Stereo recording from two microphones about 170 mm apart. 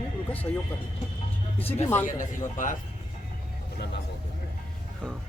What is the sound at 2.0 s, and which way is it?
Speech, 50° left (ahead or behind).